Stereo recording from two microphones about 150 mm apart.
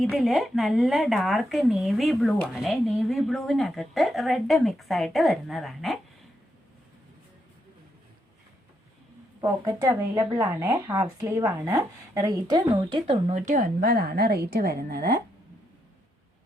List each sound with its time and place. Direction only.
0.0 s speech: centre (ahead or behind)
9.4 s speech: 25° right (ahead or behind)
13.3 s a woman's voice: 55° right (ahead or behind); by 15.2 s 90° right